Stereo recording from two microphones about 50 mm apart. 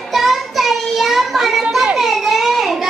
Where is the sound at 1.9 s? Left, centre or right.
Centre.